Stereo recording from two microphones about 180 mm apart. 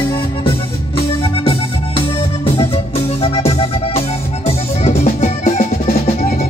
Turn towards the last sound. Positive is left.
turn(degrees=40)  # may be behind; listen again after turning